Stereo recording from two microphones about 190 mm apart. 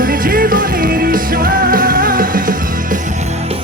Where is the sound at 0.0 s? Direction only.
50° right (ahead or behind).